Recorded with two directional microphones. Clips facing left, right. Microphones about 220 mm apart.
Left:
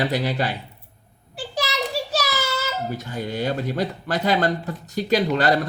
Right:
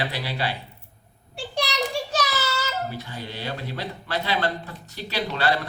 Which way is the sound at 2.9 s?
45° left (ahead or behind).